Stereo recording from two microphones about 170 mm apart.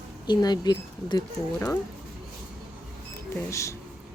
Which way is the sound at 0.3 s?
25° left (ahead or behind).